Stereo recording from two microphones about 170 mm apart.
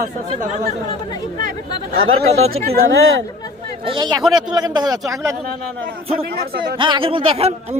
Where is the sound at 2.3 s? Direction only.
40° right (ahead or behind).